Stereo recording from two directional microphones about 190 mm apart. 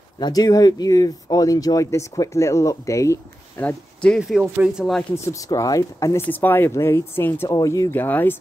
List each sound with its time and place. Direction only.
0.2 s speech: 20° left (ahead or behind)
4.2 s speech: 5° right (ahead or behind)
5.1 s speech: 15° left (ahead or behind)